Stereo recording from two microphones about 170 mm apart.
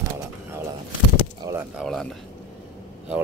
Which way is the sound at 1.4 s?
15° right (ahead or behind).